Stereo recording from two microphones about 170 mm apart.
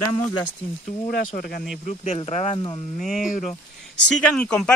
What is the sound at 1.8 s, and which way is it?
Speech, 45° left (ahead or behind).